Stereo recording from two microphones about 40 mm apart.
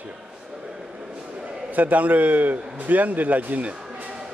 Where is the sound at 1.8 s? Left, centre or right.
Right.